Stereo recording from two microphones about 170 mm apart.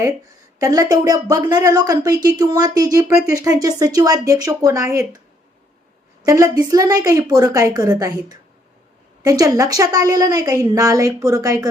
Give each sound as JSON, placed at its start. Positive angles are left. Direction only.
{"t": 0.6, "sound": "a woman's voice", "side_deg": -20}
{"t": 6.2, "sound": "a woman's voice", "side_deg": -20}